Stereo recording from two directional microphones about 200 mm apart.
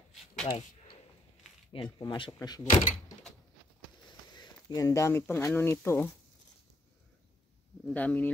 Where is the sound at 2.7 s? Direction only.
40° left (ahead or behind).